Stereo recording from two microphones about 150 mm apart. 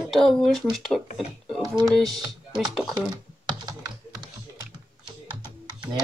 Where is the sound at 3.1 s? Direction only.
25° right (ahead or behind).